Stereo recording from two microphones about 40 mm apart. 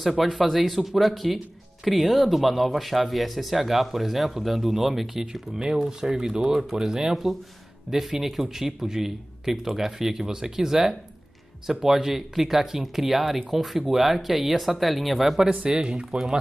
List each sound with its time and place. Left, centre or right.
0.1 s speech: centre
15.5 s speech: right